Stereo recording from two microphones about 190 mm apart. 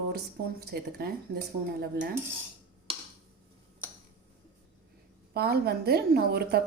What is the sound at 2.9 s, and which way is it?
Tick-tock, 30° right (ahead or behind).